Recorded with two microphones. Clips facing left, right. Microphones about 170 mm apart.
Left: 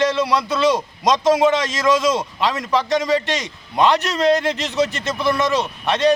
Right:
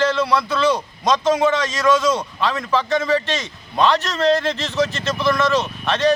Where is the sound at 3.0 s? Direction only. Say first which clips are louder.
Left 1 dB; 15° left (ahead or behind).